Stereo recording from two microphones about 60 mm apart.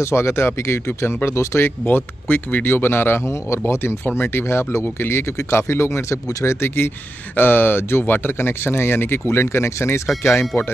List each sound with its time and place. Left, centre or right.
0.0 s speech: left